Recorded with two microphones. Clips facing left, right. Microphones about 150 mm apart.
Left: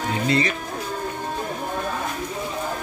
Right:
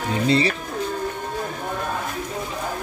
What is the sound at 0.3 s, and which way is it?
Speech, 30° right (ahead or behind).